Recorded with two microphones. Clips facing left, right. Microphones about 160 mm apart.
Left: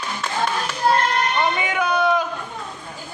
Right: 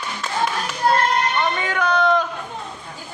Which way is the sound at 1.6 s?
10° left (ahead or behind).